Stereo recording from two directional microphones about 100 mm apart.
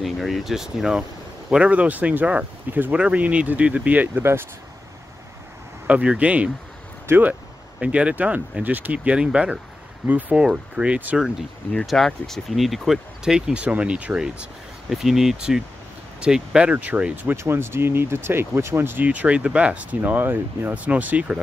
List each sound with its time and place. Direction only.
0.0 s speech: centre (ahead or behind); by 4.5 s 25° right (ahead or behind)
5.9 s speech: 15° right (ahead or behind)
11.2 s speech: centre (ahead or behind)